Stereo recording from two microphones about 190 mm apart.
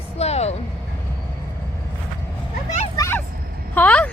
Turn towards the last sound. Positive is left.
turn(degrees=10)  # may be behind; listen again after turning